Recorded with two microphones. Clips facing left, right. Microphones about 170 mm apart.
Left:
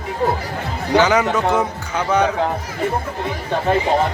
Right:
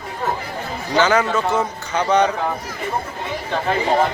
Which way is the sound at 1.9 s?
5° left (ahead or behind).